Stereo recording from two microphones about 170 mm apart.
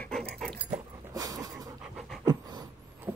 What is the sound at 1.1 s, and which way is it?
Dog, 20° right (ahead or behind).